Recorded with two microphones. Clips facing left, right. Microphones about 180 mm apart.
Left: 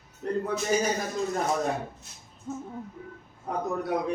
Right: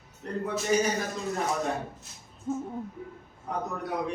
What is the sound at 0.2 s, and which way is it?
Speech, 40° left (ahead or behind).